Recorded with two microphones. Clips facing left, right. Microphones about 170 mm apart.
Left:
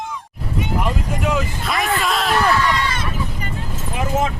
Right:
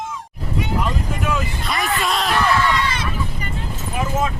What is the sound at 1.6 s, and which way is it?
Speech, centre (ahead or behind).